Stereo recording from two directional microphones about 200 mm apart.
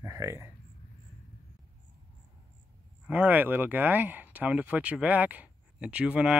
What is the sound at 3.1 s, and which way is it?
Speech, 10° right (ahead or behind).